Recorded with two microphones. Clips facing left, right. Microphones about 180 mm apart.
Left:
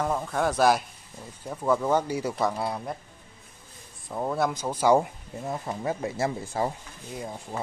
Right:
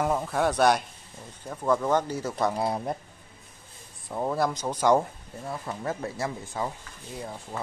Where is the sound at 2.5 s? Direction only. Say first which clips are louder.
Right 3 dB; 20° right (ahead or behind).